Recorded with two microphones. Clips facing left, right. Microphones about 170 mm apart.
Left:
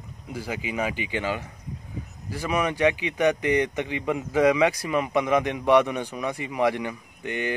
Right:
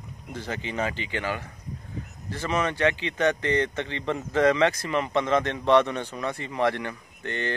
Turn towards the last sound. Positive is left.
turn(degrees=10)  # may be behind; listen again after turning